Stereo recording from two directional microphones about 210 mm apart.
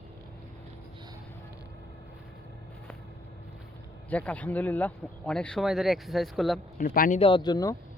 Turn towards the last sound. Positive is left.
turn(degrees=15)  # may be behind; listen again after turning